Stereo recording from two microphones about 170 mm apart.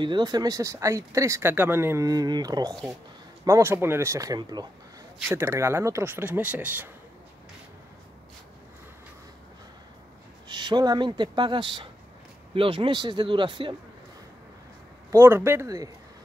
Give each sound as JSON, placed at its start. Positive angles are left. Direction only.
{"t": 0.0, "sound": "speech", "side_deg": -25}
{"t": 10.5, "sound": "speech", "side_deg": -25}
{"t": 15.0, "sound": "speech", "side_deg": -15}